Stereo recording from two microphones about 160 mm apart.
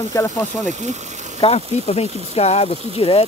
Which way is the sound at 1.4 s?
40° left (ahead or behind).